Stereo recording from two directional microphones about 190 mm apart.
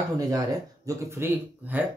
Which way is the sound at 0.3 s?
20° right (ahead or behind).